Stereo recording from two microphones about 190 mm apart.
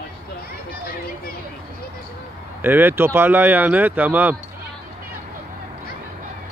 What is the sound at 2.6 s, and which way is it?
Speech, 10° right (ahead or behind).